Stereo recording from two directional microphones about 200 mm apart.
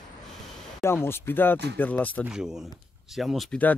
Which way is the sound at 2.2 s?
5° right (ahead or behind).